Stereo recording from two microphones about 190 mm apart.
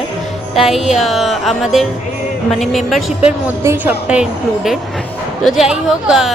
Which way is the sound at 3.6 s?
10° right (ahead or behind).